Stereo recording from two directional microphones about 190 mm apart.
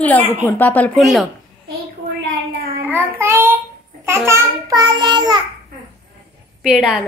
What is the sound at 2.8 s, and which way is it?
Child singing, 10° right (ahead or behind).